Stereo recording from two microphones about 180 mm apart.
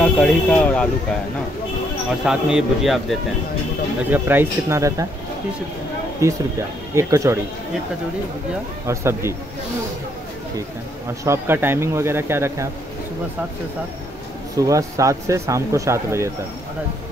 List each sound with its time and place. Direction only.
0.0 s speech: 10° left (ahead or behind)
2.2 s a man's voice: 5° right (ahead or behind)
4.1 s speech: 10° right (ahead or behind)
6.2 s speech: 15° right (ahead or behind)
8.8 s speech: 15° right (ahead or behind)
11.2 s speech: 10° right (ahead or behind)
14.6 s speech: 20° right (ahead or behind)